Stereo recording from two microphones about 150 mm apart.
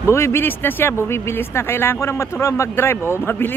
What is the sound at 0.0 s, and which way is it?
Speech, 20° left (ahead or behind).